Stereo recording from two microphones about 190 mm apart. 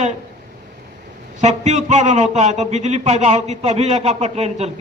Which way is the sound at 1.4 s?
40° right (ahead or behind).